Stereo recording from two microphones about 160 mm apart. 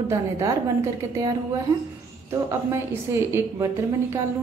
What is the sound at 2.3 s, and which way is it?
A woman's voice, 20° right (ahead or behind).